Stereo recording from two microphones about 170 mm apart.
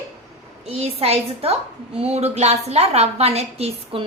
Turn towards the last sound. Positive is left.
turn(degrees=-35)  # may be behind; listen again after turning